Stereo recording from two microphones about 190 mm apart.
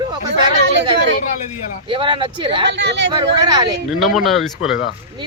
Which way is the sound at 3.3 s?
25° right (ahead or behind).